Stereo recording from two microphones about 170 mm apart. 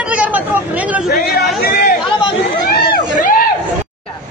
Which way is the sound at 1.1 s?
65° left (ahead or behind).